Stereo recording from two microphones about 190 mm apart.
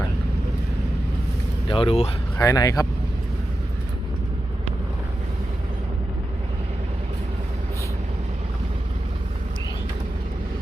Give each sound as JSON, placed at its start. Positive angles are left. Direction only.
{"t": 1.6, "sound": "speech", "side_deg": 30}
{"t": 2.4, "sound": "speech", "side_deg": 20}